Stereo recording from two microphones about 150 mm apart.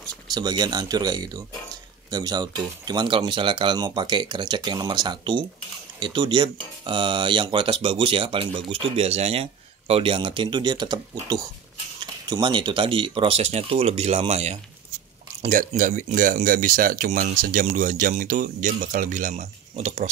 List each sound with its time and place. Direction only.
0.3 s speech: 30° right (ahead or behind); by 14.6 s 45° right (ahead or behind)
15.5 s speech: 60° right (ahead or behind)